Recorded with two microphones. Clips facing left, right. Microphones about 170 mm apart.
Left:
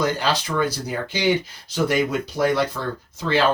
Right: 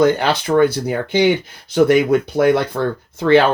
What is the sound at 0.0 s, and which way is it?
Speech, 60° right (ahead or behind).